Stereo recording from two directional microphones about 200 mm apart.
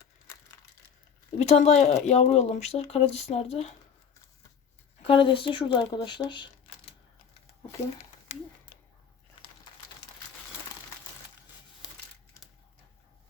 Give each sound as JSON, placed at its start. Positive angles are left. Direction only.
{"t": 1.4, "sound": "speech", "side_deg": 30}
{"t": 5.0, "sound": "speech", "side_deg": 25}
{"t": 8.3, "sound": "speech", "side_deg": 35}